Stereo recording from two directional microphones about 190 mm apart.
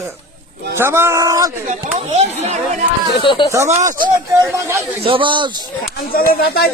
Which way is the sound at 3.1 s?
25° left (ahead or behind).